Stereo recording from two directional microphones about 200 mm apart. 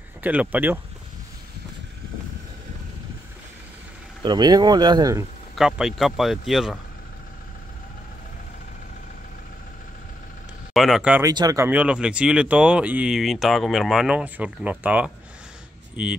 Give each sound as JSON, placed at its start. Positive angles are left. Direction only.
{"t": 0.2, "sound": "speech", "side_deg": -10}
{"t": 4.2, "sound": "speech", "side_deg": -20}
{"t": 5.6, "sound": "speech", "side_deg": 0}
{"t": 10.7, "sound": "speech", "side_deg": 0}
{"t": 11.2, "sound": "speech", "side_deg": -15}